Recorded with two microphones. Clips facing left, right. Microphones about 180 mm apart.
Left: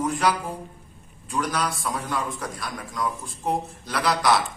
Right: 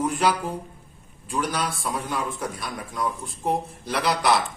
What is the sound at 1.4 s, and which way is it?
Speech, 30° right (ahead or behind).